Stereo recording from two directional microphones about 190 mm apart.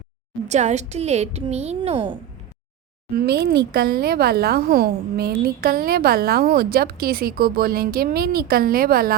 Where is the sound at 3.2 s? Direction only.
55° right (ahead or behind).